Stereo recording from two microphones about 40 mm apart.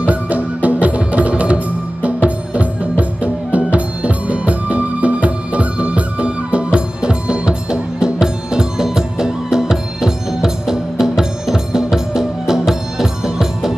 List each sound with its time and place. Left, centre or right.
0.0 s music: right; by 13.7 s centre